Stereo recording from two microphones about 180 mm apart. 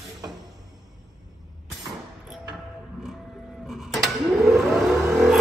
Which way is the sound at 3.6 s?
Centre (ahead or behind).